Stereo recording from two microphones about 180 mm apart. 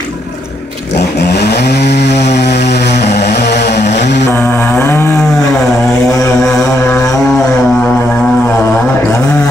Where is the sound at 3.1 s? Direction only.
70° left (ahead or behind).